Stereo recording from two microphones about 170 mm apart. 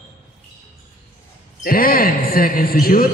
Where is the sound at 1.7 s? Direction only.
60° left (ahead or behind).